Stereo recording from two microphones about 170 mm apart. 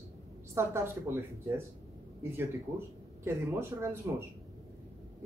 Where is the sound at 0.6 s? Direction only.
15° right (ahead or behind).